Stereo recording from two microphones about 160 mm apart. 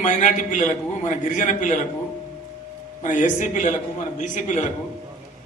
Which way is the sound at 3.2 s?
50° left (ahead or behind).